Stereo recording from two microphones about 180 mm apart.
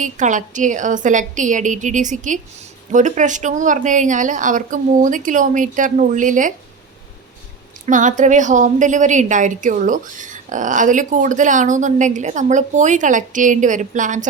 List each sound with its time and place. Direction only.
0.0 s a woman's voice: 45° right (ahead or behind)
7.9 s a woman's voice: 45° right (ahead or behind)